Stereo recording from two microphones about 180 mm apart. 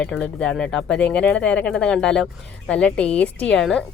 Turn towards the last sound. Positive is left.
turn(degrees=5)  # may be behind; listen again after turning